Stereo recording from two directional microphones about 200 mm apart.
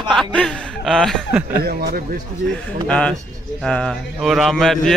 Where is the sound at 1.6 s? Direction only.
50° right (ahead or behind).